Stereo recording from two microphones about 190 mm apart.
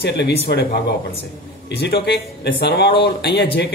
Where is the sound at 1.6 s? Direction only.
60° left (ahead or behind).